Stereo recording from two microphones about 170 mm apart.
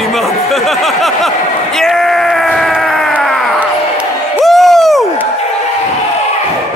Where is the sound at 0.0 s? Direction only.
Centre (ahead or behind).